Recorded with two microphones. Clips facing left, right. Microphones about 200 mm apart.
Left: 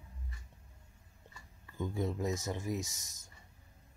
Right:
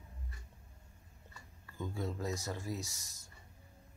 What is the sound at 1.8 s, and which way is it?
Speech, 20° left (ahead or behind).